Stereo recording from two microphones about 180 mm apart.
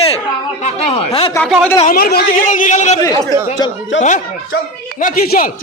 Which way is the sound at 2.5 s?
45° left (ahead or behind).